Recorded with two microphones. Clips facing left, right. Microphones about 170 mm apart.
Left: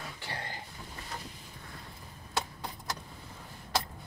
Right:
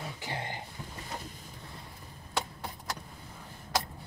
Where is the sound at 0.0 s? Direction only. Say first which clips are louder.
Right 3 dB; 20° right (ahead or behind).